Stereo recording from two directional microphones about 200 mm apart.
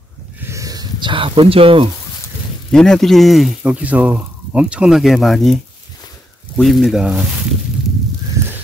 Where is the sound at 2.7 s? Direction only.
Centre (ahead or behind).